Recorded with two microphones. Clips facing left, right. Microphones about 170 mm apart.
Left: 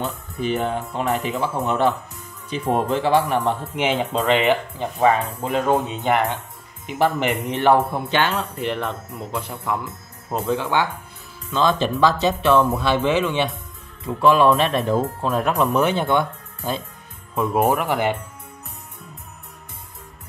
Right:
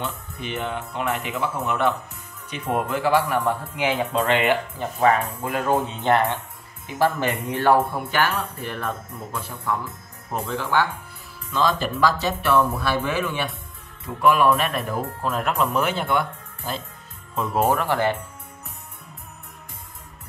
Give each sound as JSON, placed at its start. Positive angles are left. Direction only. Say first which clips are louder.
{"t": 0.0, "sound": "speech", "louder": "left 6 dB", "side_deg": 40}